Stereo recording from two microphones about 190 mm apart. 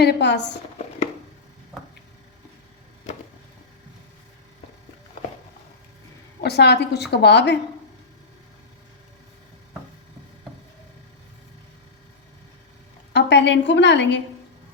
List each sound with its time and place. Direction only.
0.0 s a woman's voice: 60° left (ahead or behind)
6.4 s a woman's voice: 60° left (ahead or behind)
13.1 s a woman's voice: 65° left (ahead or behind)